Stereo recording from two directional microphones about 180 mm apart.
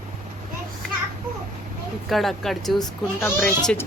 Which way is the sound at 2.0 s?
Centre (ahead or behind).